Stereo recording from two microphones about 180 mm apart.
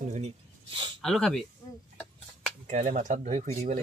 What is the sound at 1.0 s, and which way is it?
Speech, centre (ahead or behind).